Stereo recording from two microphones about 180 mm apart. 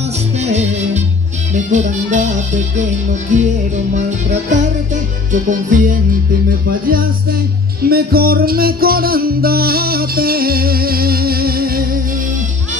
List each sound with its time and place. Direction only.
0.4 s music: 40° right (ahead or behind); by 12.0 s 55° right (ahead or behind)